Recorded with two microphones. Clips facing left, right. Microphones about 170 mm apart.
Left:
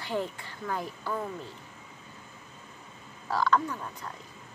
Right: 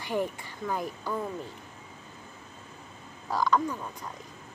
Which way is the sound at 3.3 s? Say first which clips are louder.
Even; 15° right (ahead or behind).